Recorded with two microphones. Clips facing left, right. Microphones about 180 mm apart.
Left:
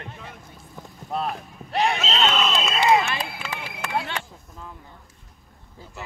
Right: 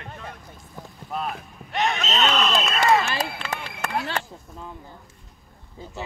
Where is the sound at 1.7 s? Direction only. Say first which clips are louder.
Left 2 dB; 35° left (ahead or behind).